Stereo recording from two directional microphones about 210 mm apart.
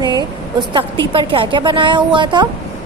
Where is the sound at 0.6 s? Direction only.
20° right (ahead or behind).